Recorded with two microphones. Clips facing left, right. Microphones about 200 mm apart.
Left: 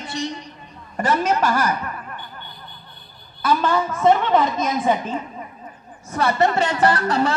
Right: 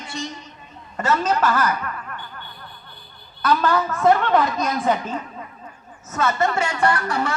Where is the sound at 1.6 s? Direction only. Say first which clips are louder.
Even; 20° left (ahead or behind).